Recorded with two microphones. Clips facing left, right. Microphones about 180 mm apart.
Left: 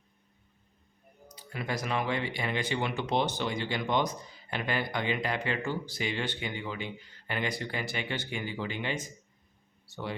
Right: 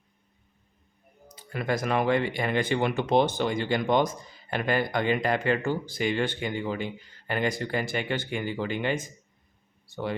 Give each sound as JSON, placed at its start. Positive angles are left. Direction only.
{"t": 1.5, "sound": "speech", "side_deg": -50}